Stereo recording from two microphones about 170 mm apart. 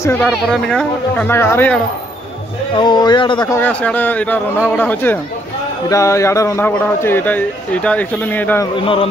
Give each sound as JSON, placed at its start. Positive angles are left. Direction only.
{"t": 0.0, "sound": "a man's voice", "side_deg": 10}
{"t": 2.7, "sound": "a man's voice", "side_deg": 25}
{"t": 8.8, "sound": "a man's voice", "side_deg": 30}